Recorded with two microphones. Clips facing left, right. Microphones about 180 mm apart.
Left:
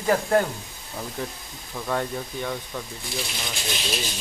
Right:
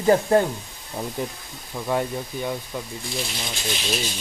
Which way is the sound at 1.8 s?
10° right (ahead or behind).